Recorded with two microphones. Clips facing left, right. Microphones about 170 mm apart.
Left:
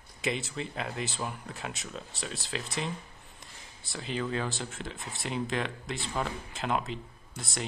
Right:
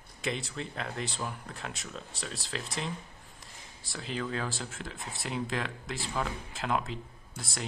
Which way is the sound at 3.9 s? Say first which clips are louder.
Left 2 dB; centre (ahead or behind).